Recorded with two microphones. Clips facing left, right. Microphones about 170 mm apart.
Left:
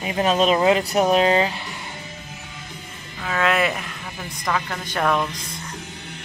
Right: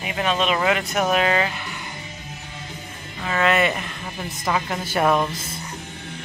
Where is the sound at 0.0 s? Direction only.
35° left (ahead or behind).